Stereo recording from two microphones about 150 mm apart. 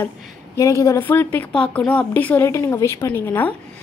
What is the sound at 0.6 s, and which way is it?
A woman's voice, 20° left (ahead or behind).